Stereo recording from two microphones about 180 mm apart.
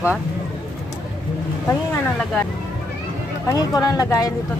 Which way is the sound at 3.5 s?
20° left (ahead or behind).